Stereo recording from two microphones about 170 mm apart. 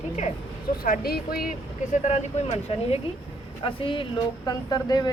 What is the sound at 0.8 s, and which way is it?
Speech, 60° left (ahead or behind).